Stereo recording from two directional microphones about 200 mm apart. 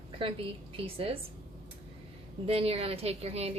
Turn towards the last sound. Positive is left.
turn(degrees=-30)  # may be behind; listen again after turning